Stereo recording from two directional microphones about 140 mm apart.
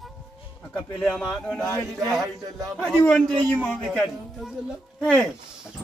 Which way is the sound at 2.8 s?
5° left (ahead or behind).